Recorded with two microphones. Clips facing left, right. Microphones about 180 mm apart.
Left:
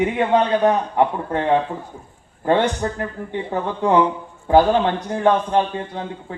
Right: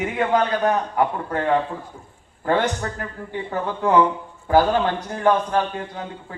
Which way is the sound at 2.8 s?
25° left (ahead or behind).